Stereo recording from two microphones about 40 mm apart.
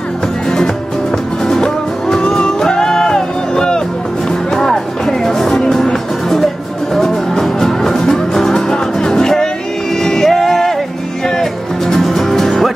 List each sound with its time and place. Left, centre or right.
1.5 s music: centre
11.9 s music: centre